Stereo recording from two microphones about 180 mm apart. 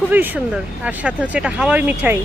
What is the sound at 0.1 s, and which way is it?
Speech, 10° right (ahead or behind).